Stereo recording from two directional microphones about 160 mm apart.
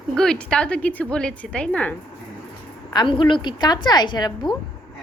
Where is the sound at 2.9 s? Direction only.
30° left (ahead or behind).